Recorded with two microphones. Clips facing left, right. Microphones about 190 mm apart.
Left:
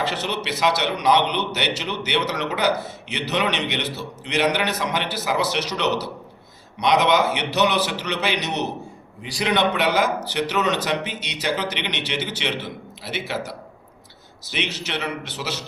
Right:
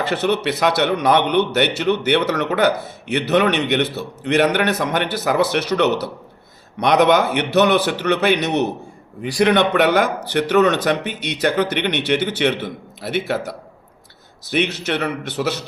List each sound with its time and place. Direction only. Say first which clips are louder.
0.0 s a man's voice: right 7 dB; 55° right (ahead or behind)